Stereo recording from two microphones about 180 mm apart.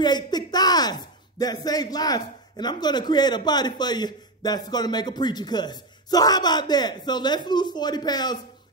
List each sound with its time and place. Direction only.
0.0 s speech: 25° left (ahead or behind)